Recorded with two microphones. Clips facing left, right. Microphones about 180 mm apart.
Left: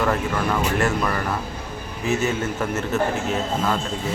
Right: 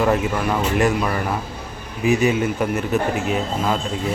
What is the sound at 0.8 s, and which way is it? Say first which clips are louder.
A man's voice: right 3 dB; 15° right (ahead or behind).